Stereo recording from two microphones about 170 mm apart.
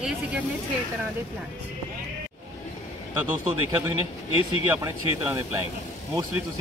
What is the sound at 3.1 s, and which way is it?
Speech, 15° right (ahead or behind).